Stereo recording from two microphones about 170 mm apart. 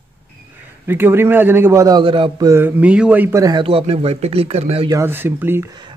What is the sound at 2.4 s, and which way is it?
Speech, 15° right (ahead or behind).